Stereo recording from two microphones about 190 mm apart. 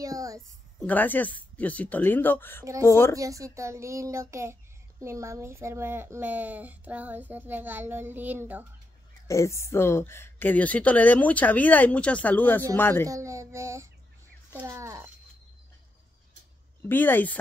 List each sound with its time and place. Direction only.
0.0 s a sound: 20° right (ahead or behind)
0.7 s a woman's voice: 10° left (ahead or behind)
2.6 s speech: 15° right (ahead or behind)
2.9 s a woman's voice: 15° left (ahead or behind)
3.2 s speech: 15° right (ahead or behind)
9.3 s a woman's voice: 15° left (ahead or behind)
13.1 s speech: 15° right (ahead or behind)
16.9 s a woman's voice: 10° left (ahead or behind)